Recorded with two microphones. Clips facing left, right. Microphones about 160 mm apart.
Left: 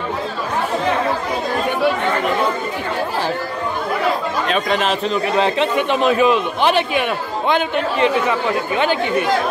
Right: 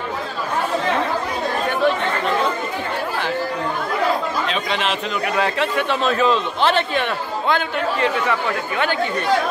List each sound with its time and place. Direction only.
4.5 s a man's voice: 45° left (ahead or behind)
5.3 s a man's voice: 20° left (ahead or behind)